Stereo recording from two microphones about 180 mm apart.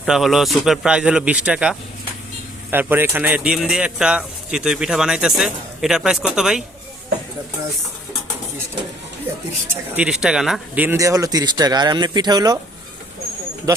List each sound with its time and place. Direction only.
0.0 s speech: centre (ahead or behind)
9.9 s speech: 5° right (ahead or behind)
10.8 s speech: 20° right (ahead or behind)